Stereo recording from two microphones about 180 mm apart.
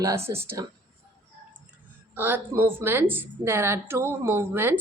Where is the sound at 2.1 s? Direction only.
10° right (ahead or behind).